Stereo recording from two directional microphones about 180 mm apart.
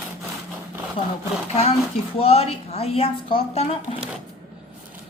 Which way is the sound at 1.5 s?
35° left (ahead or behind).